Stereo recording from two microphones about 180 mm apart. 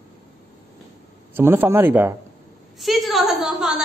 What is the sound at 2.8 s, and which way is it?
Speech, centre (ahead or behind).